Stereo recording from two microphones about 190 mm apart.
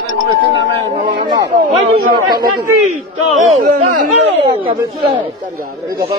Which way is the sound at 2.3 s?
20° right (ahead or behind).